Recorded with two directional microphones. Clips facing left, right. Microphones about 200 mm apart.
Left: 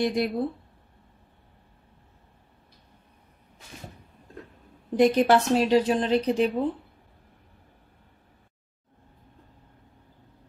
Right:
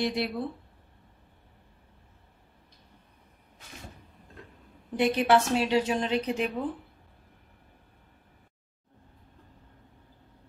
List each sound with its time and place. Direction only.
0.0 s speech: 45° left (ahead or behind)
4.9 s a woman's voice: 40° left (ahead or behind)